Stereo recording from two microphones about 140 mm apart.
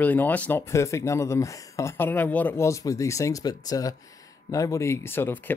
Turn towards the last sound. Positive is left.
turn(degrees=15)  # may be behind; listen again after turning